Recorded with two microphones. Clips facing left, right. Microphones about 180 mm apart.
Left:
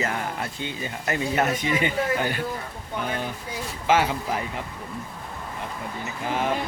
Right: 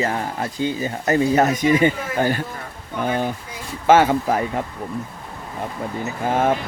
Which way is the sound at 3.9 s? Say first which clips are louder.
Right 8 dB; 50° right (ahead or behind).